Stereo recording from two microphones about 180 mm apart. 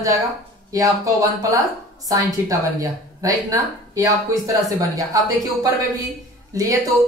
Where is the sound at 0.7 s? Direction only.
20° right (ahead or behind).